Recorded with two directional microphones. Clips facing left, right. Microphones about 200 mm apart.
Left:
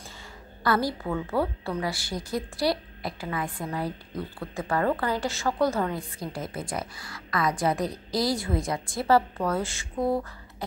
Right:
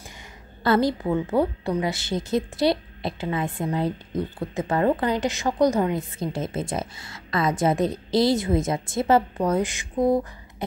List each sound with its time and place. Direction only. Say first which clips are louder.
0.7 s a woman's voice: right 5 dB; 20° right (ahead or behind)